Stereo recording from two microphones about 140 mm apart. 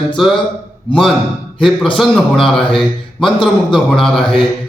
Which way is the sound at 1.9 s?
Centre (ahead or behind).